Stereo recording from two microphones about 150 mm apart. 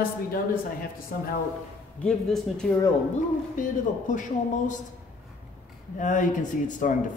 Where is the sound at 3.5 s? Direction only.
60° left (ahead or behind).